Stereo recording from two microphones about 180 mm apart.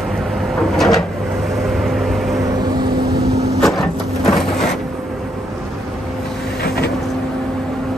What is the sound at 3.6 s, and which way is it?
Printer, centre (ahead or behind).